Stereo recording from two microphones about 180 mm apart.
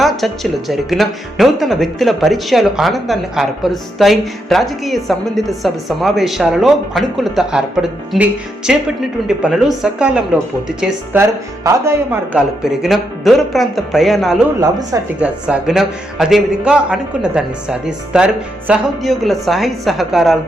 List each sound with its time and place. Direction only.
0.0 s speech: centre (ahead or behind)
12.6 s speech: centre (ahead or behind)
14.6 s a woman's voice: 20° right (ahead or behind)
15.2 s speech: 5° right (ahead or behind)